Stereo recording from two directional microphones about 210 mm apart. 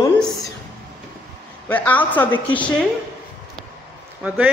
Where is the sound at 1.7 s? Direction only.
10° left (ahead or behind).